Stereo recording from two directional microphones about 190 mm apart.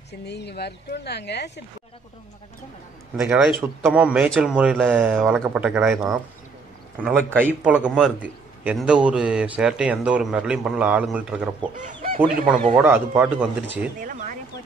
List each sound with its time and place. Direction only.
0.2 s speech: 60° left (ahead or behind)
3.2 s a man's voice: 5° right (ahead or behind)
11.7 s speech: 45° right (ahead or behind)
12.7 s speech: 10° right (ahead or behind)
14.0 s a sound: 45° right (ahead or behind)